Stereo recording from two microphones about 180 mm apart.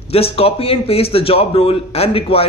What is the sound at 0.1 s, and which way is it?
A man's voice, 30° left (ahead or behind).